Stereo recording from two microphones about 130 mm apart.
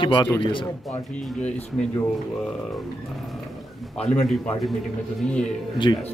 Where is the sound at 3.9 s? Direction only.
50° left (ahead or behind).